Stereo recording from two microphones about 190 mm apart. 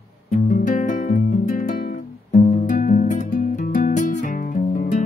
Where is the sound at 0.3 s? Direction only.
45° left (ahead or behind).